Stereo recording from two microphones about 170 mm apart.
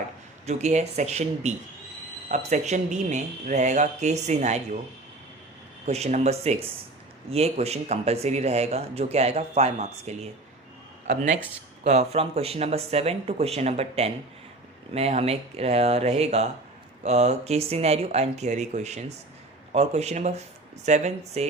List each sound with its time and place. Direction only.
0.4 s speech: 40° right (ahead or behind)
5.8 s speech: 40° right (ahead or behind)